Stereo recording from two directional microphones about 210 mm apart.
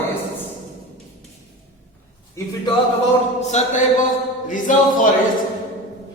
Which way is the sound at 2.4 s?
15° left (ahead or behind).